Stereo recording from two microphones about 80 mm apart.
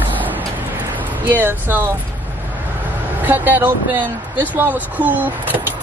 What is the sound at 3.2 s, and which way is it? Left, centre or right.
Speech, right.